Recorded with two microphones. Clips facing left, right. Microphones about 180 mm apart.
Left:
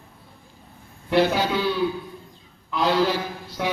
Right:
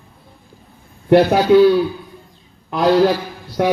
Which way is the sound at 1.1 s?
45° right (ahead or behind).